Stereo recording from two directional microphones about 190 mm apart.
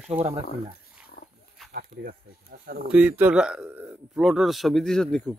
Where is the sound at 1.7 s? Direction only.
50° right (ahead or behind).